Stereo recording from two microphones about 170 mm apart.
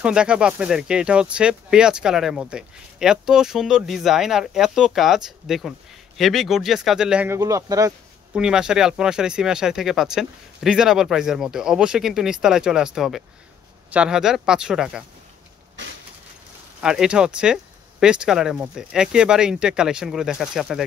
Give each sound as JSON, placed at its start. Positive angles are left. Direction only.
{"t": 0.0, "sound": "speech", "side_deg": -5}
{"t": 7.3, "sound": "speech", "side_deg": -20}
{"t": 8.3, "sound": "speech", "side_deg": -5}
{"t": 16.8, "sound": "speech", "side_deg": -5}